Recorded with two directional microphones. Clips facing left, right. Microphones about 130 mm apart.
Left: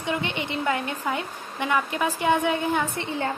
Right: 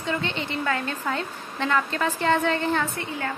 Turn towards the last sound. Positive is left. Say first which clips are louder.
# even
turn(degrees=15)  # may be behind; listen again after turning